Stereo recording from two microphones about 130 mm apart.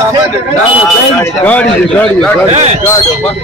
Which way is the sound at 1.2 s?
10° left (ahead or behind).